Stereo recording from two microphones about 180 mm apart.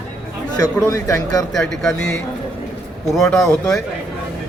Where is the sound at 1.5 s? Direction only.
Centre (ahead or behind).